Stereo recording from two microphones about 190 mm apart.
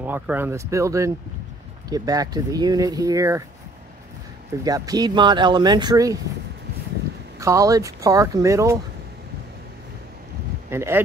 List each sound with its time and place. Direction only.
0.0 s speech: 10° right (ahead or behind)
4.6 s speech: 20° right (ahead or behind)
7.3 s speech: 15° right (ahead or behind)
10.7 s speech: 15° right (ahead or behind)